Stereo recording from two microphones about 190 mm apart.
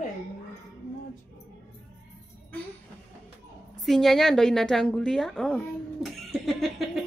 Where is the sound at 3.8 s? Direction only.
Centre (ahead or behind).